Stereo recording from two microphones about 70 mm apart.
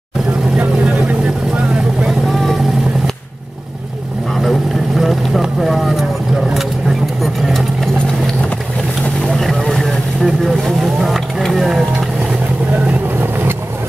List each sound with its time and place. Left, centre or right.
4.4 s vehicle: centre
7.4 s vehicle: centre
9.2 s vehicle: centre
12.7 s vehicle: right